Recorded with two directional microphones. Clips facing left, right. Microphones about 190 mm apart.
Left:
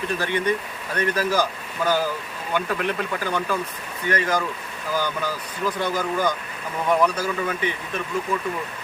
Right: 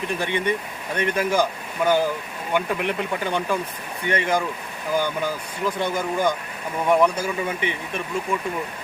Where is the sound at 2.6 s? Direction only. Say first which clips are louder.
Right 1 dB; 15° right (ahead or behind).